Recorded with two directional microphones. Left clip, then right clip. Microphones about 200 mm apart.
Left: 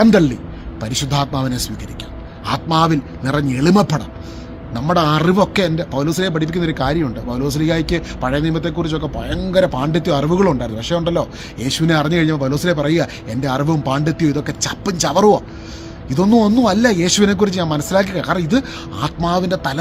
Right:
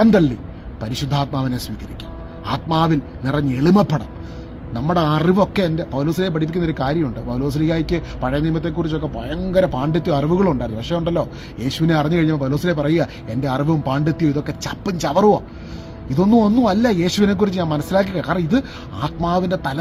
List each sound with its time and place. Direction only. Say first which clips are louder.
0.0 s a man's voice: left 2 dB; 10° left (ahead or behind)